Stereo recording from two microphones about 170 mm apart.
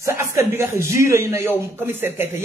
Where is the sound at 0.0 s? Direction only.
15° right (ahead or behind).